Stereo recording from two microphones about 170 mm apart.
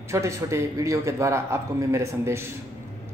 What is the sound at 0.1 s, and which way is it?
A man's voice, 15° right (ahead or behind).